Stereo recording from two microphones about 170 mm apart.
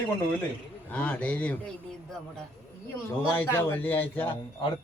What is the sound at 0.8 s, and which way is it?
Speech, 10° left (ahead or behind).